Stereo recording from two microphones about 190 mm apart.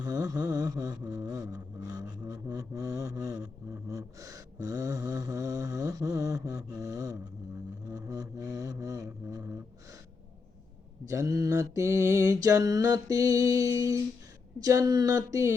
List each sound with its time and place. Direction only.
0.0 s a sound: 20° right (ahead or behind)
11.1 s mantra: 15° right (ahead or behind)
14.6 s speech: 20° right (ahead or behind)